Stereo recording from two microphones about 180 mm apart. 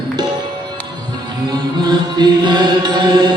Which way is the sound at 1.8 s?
25° right (ahead or behind).